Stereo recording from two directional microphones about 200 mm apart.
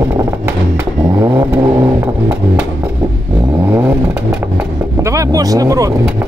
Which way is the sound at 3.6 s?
10° right (ahead or behind).